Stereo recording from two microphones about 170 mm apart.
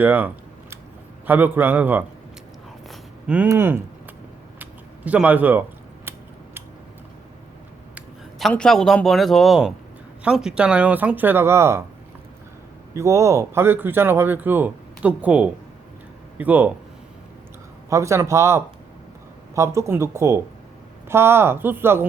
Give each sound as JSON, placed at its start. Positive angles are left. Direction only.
{"t": 0.0, "sound": "speech", "side_deg": -10}
{"t": 1.3, "sound": "speech", "side_deg": -10}
{"t": 2.9, "sound": "a sound", "side_deg": -5}
{"t": 7.9, "sound": "speech", "side_deg": 0}
{"t": 12.9, "sound": "speech", "side_deg": -15}
{"t": 17.8, "sound": "speech", "side_deg": -15}